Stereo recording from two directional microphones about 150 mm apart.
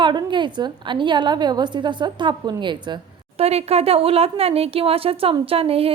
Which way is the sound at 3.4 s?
45° right (ahead or behind).